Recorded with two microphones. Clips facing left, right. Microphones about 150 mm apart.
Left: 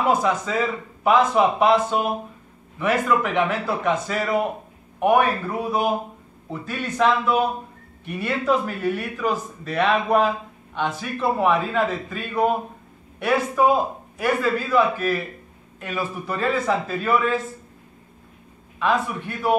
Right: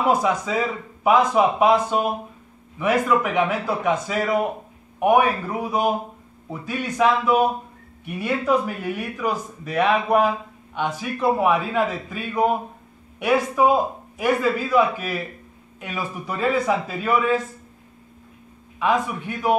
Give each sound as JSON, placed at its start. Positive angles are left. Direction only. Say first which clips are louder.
{"t": 0.1, "sound": "a man's voice", "louder": "even", "side_deg": -10}
{"t": 18.8, "sound": "a man's voice", "louder": "right 1 dB", "side_deg": -10}